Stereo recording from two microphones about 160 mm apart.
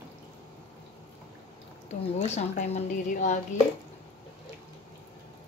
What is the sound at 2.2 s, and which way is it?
A woman's voice, 45° left (ahead or behind).